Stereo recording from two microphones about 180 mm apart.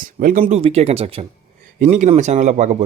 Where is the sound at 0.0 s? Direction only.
50° right (ahead or behind).